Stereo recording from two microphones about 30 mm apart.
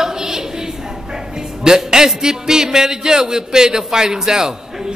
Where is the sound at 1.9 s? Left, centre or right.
Right.